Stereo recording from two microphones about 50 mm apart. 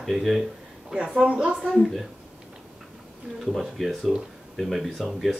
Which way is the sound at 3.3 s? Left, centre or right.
Centre.